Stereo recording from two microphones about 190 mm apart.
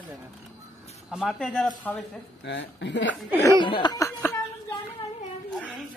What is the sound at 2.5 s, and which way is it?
Speech, 70° left (ahead or behind).